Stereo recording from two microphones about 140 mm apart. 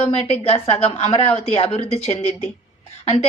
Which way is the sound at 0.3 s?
45° left (ahead or behind).